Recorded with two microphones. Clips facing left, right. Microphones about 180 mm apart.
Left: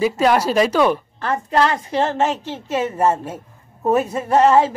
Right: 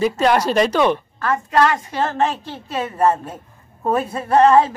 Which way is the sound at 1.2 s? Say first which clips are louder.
Right 1 dB; 30° left (ahead or behind).